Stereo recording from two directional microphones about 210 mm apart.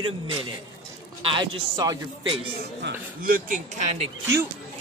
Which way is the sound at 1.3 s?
20° right (ahead or behind).